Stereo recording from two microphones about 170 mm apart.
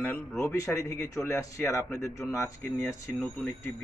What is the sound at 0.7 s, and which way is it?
Speech, 20° left (ahead or behind).